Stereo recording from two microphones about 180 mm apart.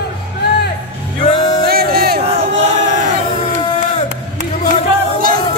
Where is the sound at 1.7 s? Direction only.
60° right (ahead or behind).